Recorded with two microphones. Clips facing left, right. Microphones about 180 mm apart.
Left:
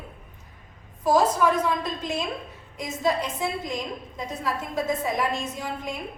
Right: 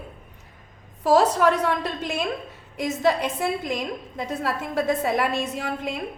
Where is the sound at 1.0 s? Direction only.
70° right (ahead or behind).